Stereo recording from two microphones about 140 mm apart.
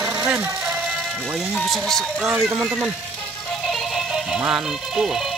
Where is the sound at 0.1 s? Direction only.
10° right (ahead or behind).